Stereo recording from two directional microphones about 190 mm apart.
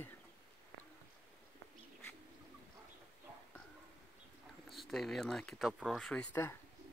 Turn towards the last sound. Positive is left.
turn(degrees=10)  # may be behind; listen again after turning